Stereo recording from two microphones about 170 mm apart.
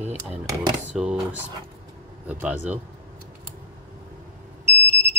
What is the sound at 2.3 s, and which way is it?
Speech, 10° right (ahead or behind).